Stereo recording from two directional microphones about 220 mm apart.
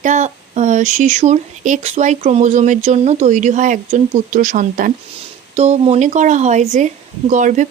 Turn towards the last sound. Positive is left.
turn(degrees=-35)  # may be behind; listen again after turning